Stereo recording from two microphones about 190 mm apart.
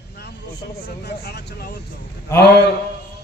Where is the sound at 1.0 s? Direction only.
60° left (ahead or behind).